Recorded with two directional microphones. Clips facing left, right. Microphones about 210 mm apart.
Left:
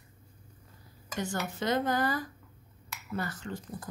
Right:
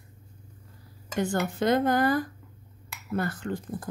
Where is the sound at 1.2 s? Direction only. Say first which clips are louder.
Right 7 dB; 55° right (ahead or behind).